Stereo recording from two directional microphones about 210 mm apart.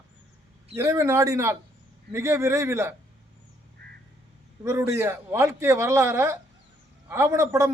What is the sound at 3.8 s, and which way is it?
Duck, 50° right (ahead or behind).